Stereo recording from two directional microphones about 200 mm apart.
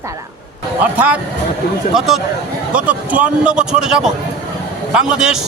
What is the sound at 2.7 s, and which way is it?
Speech, 5° right (ahead or behind).